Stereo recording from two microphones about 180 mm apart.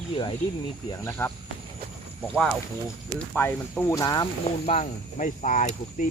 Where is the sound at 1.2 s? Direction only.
15° left (ahead or behind).